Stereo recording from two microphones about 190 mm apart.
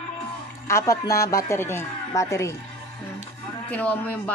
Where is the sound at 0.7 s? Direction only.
15° left (ahead or behind).